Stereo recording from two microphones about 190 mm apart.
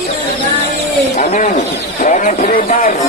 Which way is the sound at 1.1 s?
45° left (ahead or behind).